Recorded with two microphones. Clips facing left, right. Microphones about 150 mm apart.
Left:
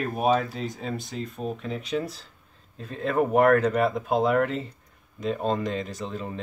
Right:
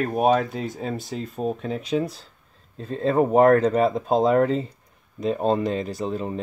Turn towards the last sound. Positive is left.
turn(degrees=-35)  # may be behind; listen again after turning